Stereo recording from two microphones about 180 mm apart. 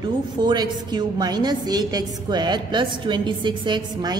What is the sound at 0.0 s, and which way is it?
A woman's voice, 25° right (ahead or behind).